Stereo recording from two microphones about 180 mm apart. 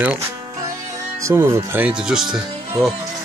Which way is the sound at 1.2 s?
15° right (ahead or behind).